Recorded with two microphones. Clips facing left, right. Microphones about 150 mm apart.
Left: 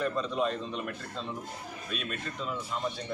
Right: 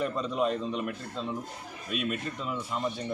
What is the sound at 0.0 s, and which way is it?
Speech, 10° right (ahead or behind).